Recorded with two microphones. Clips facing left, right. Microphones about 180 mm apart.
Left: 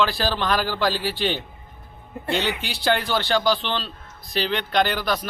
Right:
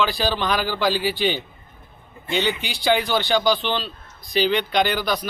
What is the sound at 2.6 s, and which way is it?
Speech, centre (ahead or behind).